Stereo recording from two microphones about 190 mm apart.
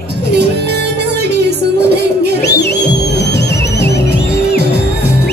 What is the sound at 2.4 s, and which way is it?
Music, 60° left (ahead or behind).